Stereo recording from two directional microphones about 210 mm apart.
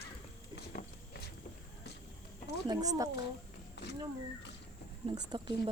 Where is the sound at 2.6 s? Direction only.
20° right (ahead or behind).